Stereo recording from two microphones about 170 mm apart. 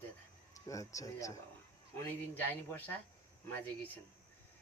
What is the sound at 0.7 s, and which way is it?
Speech, 20° left (ahead or behind).